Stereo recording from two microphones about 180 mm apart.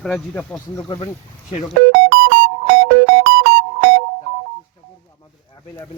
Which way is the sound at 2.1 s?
85° right.